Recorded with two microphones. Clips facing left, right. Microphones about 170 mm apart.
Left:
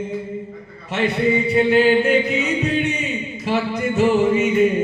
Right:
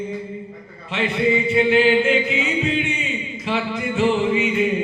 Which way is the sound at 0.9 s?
40° left (ahead or behind).